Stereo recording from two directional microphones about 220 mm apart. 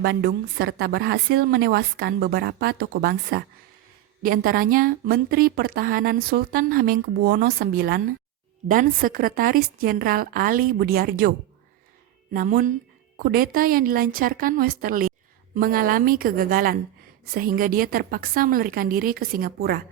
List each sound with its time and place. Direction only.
0.0 s a woman's voice: 45° right (ahead or behind)